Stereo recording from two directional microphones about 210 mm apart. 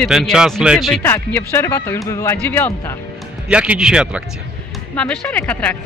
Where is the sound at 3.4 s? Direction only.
5° right (ahead or behind).